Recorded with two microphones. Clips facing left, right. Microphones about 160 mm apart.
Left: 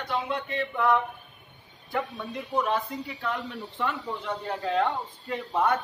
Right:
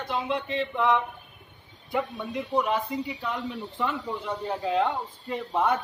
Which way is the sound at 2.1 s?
10° right (ahead or behind).